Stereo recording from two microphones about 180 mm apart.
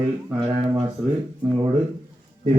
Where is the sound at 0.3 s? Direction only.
25° right (ahead or behind).